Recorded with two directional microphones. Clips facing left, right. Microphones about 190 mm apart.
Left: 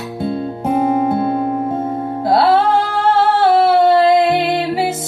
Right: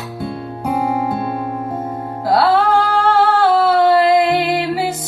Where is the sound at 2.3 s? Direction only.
20° left (ahead or behind).